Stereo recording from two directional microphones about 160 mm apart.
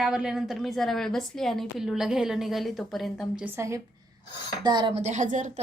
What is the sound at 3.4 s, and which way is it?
Speech, 15° right (ahead or behind).